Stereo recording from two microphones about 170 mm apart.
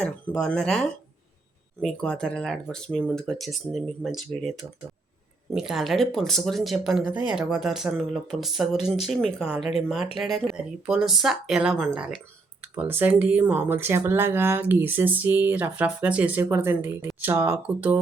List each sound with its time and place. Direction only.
0.0 s speech: 5° left (ahead or behind)